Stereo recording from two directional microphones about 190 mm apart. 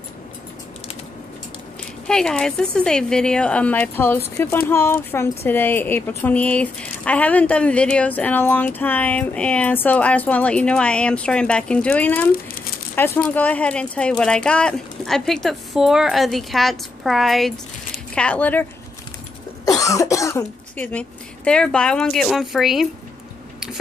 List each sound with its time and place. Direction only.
2.0 s speech: 5° left (ahead or behind)